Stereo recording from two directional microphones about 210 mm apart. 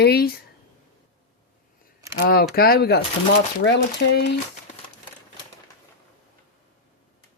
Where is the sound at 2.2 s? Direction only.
45° left (ahead or behind).